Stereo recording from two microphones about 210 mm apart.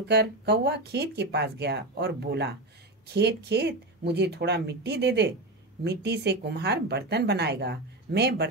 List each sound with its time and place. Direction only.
0.1 s speech: 50° right (ahead or behind)